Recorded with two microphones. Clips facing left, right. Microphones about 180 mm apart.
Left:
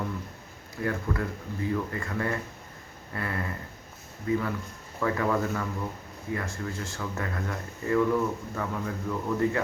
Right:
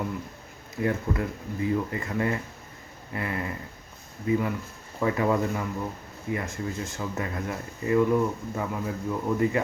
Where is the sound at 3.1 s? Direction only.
20° right (ahead or behind).